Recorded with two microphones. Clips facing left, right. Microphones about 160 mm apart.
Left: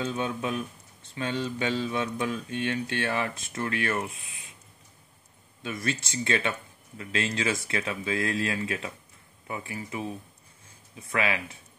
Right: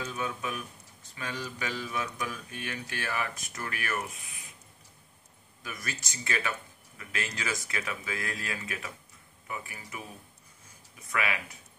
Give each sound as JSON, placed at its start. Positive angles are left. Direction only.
{"t": 0.0, "sound": "speech", "side_deg": 30}
{"t": 5.6, "sound": "speech", "side_deg": 25}
{"t": 11.1, "sound": "speech", "side_deg": 30}